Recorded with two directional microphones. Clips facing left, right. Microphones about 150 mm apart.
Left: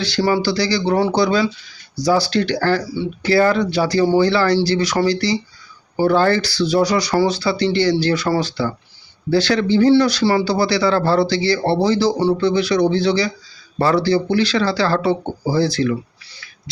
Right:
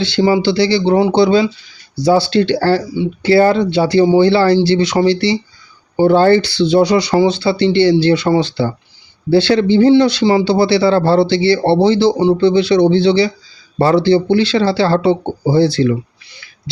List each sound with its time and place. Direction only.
0.0 s speech: 25° right (ahead or behind)